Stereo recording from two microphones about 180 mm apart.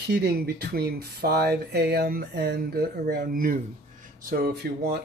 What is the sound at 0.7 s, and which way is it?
Speech, 60° right (ahead or behind).